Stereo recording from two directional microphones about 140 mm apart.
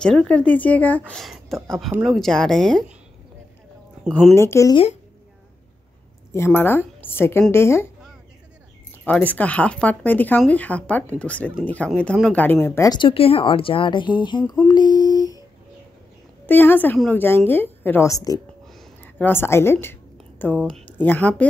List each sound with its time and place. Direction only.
0.0 s speech: 5° left (ahead or behind)
4.1 s speech: centre (ahead or behind)
4.4 s speech: 20° left (ahead or behind)
6.3 s speech: 15° left (ahead or behind)
9.0 s speech: 10° left (ahead or behind)
13.0 s speech: 40° left (ahead or behind)
14.7 s a sound: 30° left (ahead or behind)
16.4 s speech: 15° left (ahead or behind)
19.1 s a woman's voice: 15° left (ahead or behind)